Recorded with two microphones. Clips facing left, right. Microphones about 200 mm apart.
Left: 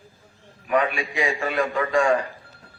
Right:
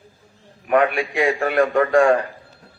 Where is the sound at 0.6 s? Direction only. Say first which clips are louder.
Right 5 dB; 60° right (ahead or behind).